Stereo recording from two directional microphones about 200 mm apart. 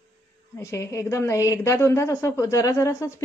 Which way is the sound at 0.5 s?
15° left (ahead or behind).